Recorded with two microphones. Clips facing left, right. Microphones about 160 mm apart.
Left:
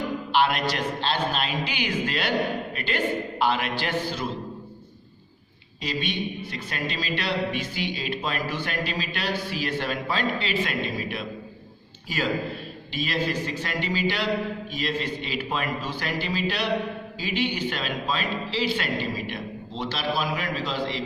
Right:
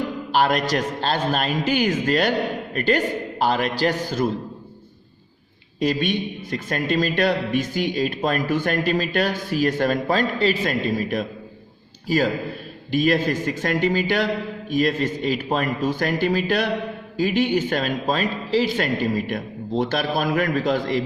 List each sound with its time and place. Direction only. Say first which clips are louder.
0.3 s a man's voice: right 4 dB; 45° right (ahead or behind)
5.8 s a man's voice: right 7 dB; 50° right (ahead or behind)